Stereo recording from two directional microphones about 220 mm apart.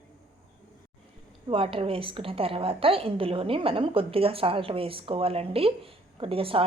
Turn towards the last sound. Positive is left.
turn(degrees=-25)  # may be behind; listen again after turning